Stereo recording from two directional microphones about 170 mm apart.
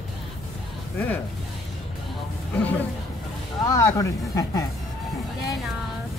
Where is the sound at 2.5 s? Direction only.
10° left (ahead or behind).